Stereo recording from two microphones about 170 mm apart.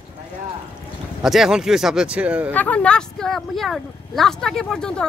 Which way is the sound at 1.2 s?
Centre (ahead or behind).